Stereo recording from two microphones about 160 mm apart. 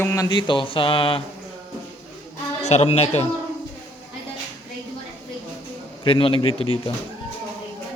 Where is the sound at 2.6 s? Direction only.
45° left (ahead or behind).